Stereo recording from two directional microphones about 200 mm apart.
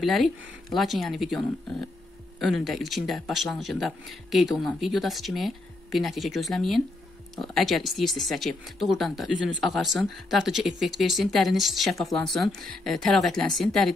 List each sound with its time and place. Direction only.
0.0 s speech: centre (ahead or behind)